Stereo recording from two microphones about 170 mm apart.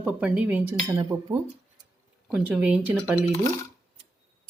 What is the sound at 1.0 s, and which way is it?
Speech, 30° right (ahead or behind).